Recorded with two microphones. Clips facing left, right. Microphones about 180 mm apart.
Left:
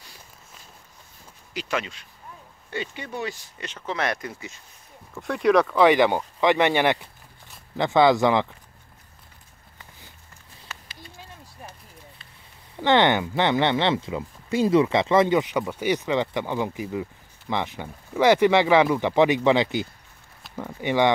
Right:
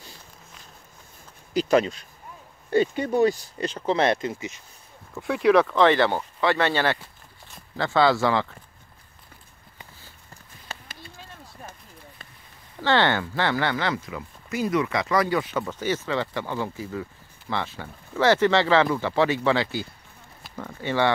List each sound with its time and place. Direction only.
1.5 s speech: 35° right (ahead or behind); by 4.6 s 20° right (ahead or behind)
5.1 s speech: centre (ahead or behind)
5.8 s speech: 15° left (ahead or behind)
10.7 s clip-clop: 30° right (ahead or behind)
12.7 s speech: 20° left (ahead or behind)